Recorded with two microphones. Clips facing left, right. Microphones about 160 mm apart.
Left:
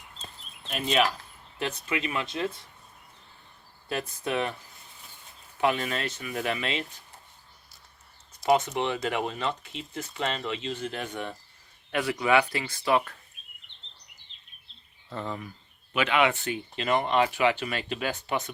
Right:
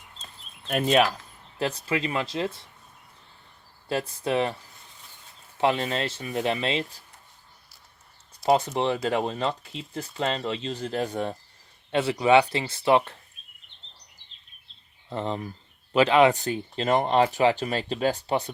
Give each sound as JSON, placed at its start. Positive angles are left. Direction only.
{"t": 0.7, "sound": "speech", "side_deg": -50}
{"t": 1.5, "sound": "speech", "side_deg": -30}
{"t": 3.8, "sound": "speech", "side_deg": -30}
{"t": 5.5, "sound": "speech", "side_deg": -30}
{"t": 8.4, "sound": "speech", "side_deg": -30}
{"t": 15.1, "sound": "speech", "side_deg": -20}
{"t": 15.9, "sound": "speech", "side_deg": -35}